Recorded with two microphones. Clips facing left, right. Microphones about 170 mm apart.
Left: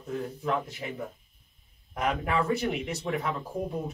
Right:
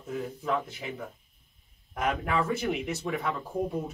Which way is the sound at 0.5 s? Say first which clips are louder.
Left 1 dB; centre (ahead or behind).